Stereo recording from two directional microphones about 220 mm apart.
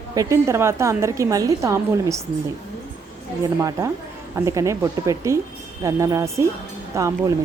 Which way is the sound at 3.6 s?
15° right (ahead or behind).